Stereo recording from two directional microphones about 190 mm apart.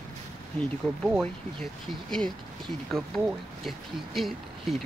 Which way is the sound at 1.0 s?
Centre (ahead or behind).